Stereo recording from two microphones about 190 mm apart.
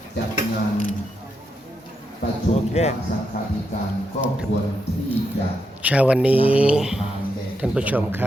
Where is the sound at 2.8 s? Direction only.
35° left (ahead or behind).